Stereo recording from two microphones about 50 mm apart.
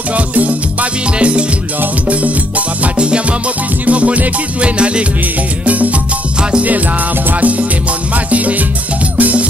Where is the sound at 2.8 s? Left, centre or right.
Right.